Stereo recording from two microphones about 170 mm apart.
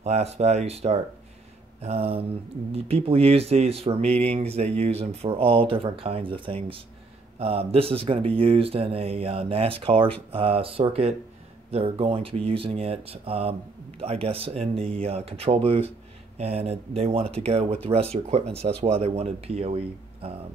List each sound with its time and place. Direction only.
0.0 s speech: 40° right (ahead or behind)